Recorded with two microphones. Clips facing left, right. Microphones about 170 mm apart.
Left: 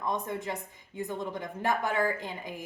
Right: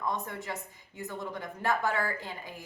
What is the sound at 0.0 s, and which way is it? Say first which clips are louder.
Speech: left 2 dB; 20° left (ahead or behind).